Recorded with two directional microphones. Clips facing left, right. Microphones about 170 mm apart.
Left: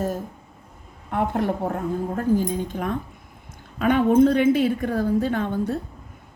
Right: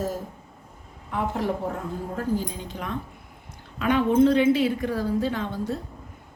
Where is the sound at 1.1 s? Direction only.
55° left (ahead or behind).